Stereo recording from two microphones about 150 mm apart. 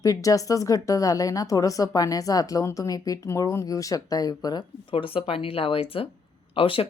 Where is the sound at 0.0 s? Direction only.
20° left (ahead or behind).